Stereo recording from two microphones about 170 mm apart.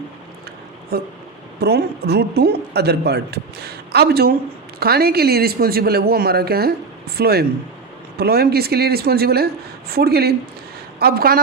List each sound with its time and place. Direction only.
0.9 s a man's voice: 65° right (ahead or behind)